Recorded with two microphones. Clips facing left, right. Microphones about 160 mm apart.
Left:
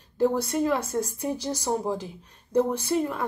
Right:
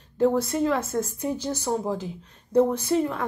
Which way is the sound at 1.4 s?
35° left (ahead or behind).